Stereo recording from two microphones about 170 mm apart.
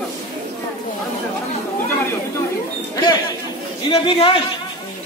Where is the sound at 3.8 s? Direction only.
35° left (ahead or behind).